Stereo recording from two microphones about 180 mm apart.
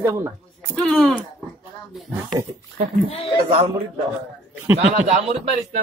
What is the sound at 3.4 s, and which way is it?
Speech, 30° right (ahead or behind).